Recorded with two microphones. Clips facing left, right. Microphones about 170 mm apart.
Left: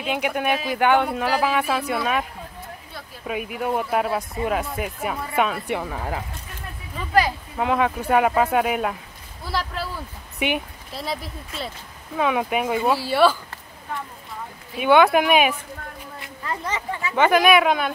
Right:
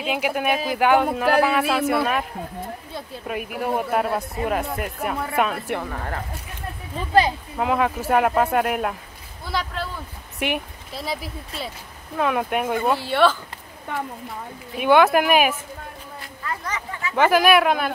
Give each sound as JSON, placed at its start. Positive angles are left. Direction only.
{"t": 0.0, "sound": "speech", "side_deg": -5}
{"t": 3.3, "sound": "speech", "side_deg": 0}
{"t": 7.5, "sound": "speech", "side_deg": 0}
{"t": 14.8, "sound": "speech", "side_deg": 0}
{"t": 16.4, "sound": "speech", "side_deg": 25}
{"t": 17.1, "sound": "speech", "side_deg": 0}